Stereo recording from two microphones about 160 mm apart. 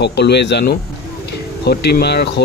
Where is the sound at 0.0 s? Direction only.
90° left.